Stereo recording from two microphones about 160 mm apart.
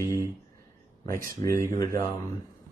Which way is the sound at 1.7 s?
20° left (ahead or behind).